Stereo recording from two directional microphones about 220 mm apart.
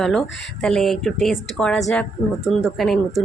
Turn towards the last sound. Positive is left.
turn(degrees=0)  # may be behind; listen again after turning